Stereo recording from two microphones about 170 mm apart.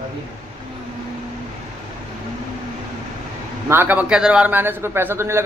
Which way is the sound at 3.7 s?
10° right (ahead or behind).